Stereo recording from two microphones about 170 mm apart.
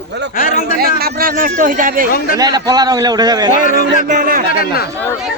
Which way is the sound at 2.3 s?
20° right (ahead or behind).